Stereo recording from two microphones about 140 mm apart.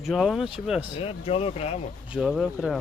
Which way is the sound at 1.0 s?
40° left (ahead or behind).